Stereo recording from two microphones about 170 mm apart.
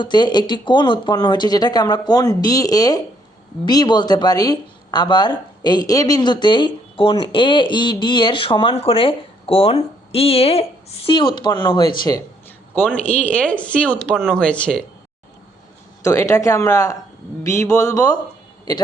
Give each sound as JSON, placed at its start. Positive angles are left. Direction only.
{"t": 0.0, "sound": "speech", "side_deg": 25}
{"t": 13.1, "sound": "speech", "side_deg": 10}
{"t": 16.0, "sound": "speech", "side_deg": 15}